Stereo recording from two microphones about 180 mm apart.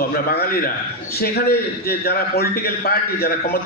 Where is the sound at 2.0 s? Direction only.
60° left (ahead or behind).